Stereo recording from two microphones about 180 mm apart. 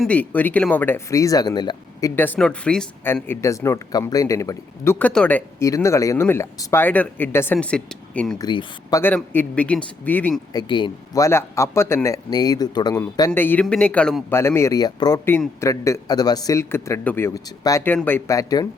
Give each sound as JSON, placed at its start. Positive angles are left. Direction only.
{"t": 0.0, "sound": "speech", "side_deg": 10}
{"t": 8.4, "sound": "speech", "side_deg": 20}
{"t": 9.0, "sound": "speech", "side_deg": 10}
{"t": 10.5, "sound": "speech", "side_deg": 25}